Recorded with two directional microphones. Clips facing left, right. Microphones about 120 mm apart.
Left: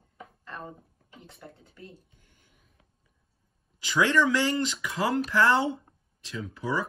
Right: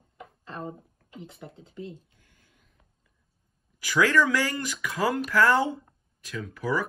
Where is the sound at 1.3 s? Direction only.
25° right (ahead or behind).